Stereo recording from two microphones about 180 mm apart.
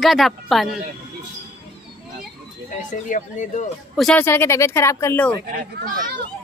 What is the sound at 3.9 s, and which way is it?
Speech, centre (ahead or behind).